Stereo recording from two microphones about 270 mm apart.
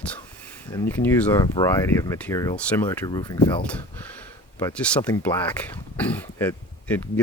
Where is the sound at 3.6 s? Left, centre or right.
Centre.